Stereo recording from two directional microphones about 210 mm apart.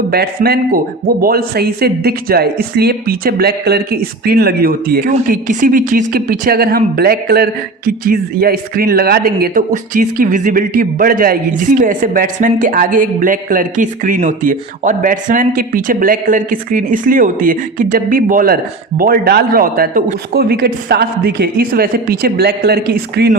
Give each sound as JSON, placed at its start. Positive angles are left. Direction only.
{"t": 0.1, "sound": "speech", "side_deg": -50}